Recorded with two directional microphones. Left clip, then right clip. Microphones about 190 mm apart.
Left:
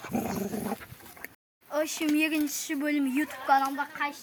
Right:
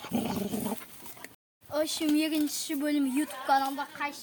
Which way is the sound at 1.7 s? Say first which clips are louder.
Even; centre (ahead or behind).